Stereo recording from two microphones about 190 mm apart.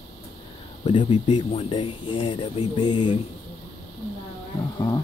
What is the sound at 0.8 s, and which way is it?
Speech, 30° left (ahead or behind).